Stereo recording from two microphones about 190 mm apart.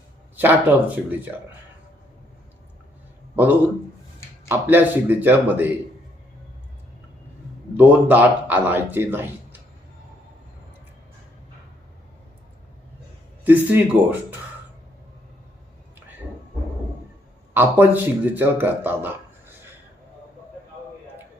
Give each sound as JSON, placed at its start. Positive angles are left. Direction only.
{"t": 0.3, "sound": "a man's voice", "side_deg": -10}
{"t": 3.3, "sound": "a man's voice", "side_deg": -10}
{"t": 7.7, "sound": "a man's voice", "side_deg": -10}
{"t": 13.4, "sound": "a man's voice", "side_deg": -10}
{"t": 17.5, "sound": "a man's voice", "side_deg": -10}